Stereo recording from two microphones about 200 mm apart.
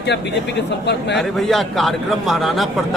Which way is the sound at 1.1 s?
Centre (ahead or behind).